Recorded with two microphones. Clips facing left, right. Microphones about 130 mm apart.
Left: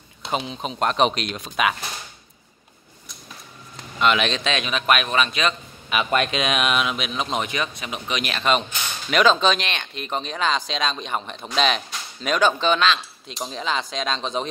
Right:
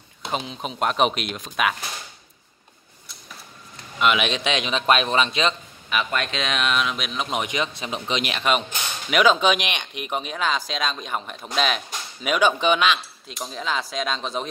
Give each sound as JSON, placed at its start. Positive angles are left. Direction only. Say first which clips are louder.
{"t": 0.2, "sound": "speech", "louder": "left 2 dB", "side_deg": 0}
{"t": 4.0, "sound": "speech", "louder": "left 1 dB", "side_deg": -5}
{"t": 5.9, "sound": "speech", "louder": "left 3 dB", "side_deg": 15}
{"t": 7.3, "sound": "speech", "louder": "right 3 dB", "side_deg": -15}
{"t": 13.4, "sound": "speech", "louder": "left 1 dB", "side_deg": 0}